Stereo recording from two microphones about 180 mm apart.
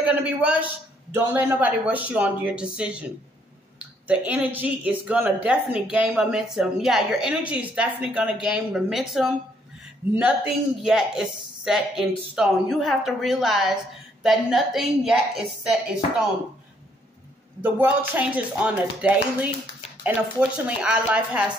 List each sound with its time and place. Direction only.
0.0 s speech: 5° right (ahead or behind)
4.1 s speech: 10° right (ahead or behind)
10.8 s speech: 5° right (ahead or behind)
17.6 s speech: 10° right (ahead or behind)